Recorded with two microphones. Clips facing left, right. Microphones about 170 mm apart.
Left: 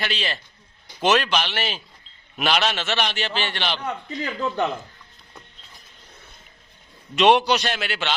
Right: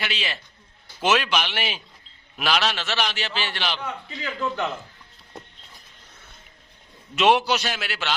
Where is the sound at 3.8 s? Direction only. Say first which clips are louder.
Left 4 dB; 40° left (ahead or behind).